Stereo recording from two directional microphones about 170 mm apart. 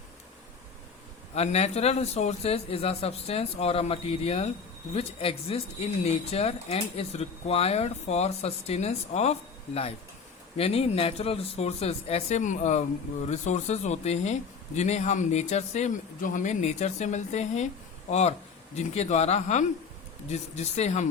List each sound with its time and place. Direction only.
1.4 s speech: 40° left (ahead or behind)